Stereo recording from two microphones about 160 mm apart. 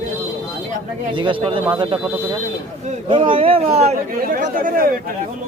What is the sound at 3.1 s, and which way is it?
Speech, 35° right (ahead or behind).